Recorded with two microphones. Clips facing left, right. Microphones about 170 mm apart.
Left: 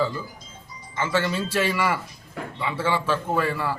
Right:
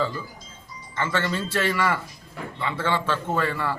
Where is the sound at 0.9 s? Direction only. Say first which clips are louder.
Left 2 dB; 10° left (ahead or behind).